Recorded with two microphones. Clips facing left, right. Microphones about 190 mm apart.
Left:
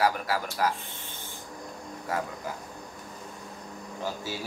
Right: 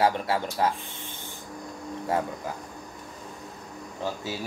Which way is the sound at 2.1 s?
30° right (ahead or behind).